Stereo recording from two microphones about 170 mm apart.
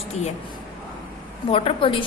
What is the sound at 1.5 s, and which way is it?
Speech, 30° left (ahead or behind).